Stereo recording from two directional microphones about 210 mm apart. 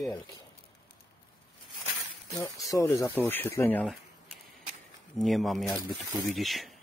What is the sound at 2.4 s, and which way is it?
Speech, 15° left (ahead or behind).